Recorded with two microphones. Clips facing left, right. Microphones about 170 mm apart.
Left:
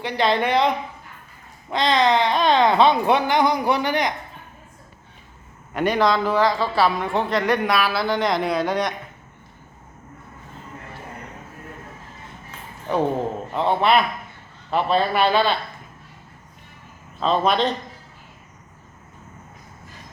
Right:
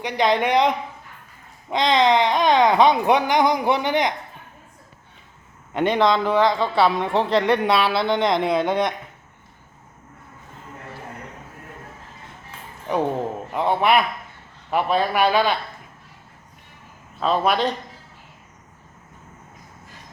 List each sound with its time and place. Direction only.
0.0 s speech: 15° right (ahead or behind)
1.7 s speech: 20° right (ahead or behind)
5.7 s a woman's voice: 20° right (ahead or behind)
12.9 s a man's voice: 15° right (ahead or behind)
17.2 s speech: 10° right (ahead or behind)